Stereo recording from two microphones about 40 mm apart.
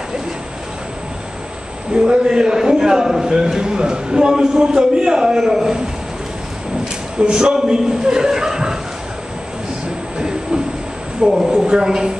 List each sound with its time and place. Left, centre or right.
2.0 s a man's voice: right
7.2 s a man's voice: right
10.1 s train: centre
11.2 s a man's voice: centre